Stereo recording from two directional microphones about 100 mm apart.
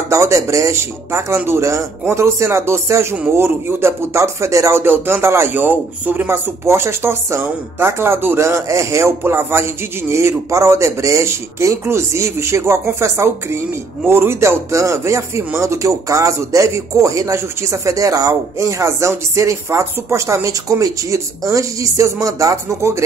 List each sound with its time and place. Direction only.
0.1 s speech: 30° right (ahead or behind)